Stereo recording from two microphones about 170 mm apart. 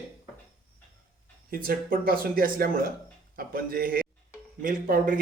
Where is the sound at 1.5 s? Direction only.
55° right (ahead or behind).